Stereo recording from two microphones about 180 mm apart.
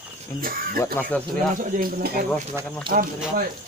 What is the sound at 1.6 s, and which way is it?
Speech, 50° right (ahead or behind).